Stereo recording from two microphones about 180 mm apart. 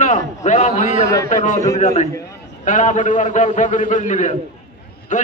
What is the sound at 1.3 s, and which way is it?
A man's voice, 45° left (ahead or behind).